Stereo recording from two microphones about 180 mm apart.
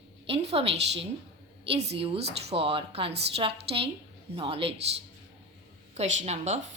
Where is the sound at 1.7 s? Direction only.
35° right (ahead or behind).